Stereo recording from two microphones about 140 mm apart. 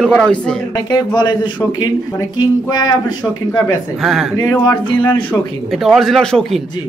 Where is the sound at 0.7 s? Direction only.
30° left (ahead or behind).